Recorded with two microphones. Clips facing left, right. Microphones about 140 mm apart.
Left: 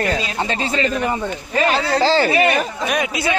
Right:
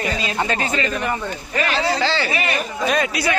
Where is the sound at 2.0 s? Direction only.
40° left (ahead or behind).